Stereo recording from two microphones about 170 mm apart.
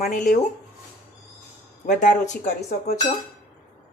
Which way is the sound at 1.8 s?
45° left (ahead or behind).